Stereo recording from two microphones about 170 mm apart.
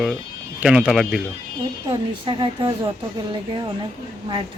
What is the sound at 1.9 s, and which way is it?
Speech, 30° right (ahead or behind).